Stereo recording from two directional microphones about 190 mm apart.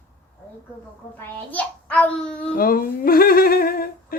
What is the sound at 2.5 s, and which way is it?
Humming, 50° left (ahead or behind).